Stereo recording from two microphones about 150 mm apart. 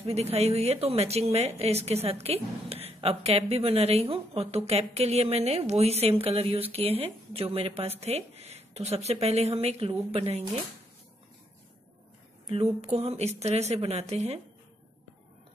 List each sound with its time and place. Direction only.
0.0 s speech: 45° right (ahead or behind)
12.4 s speech: 40° right (ahead or behind)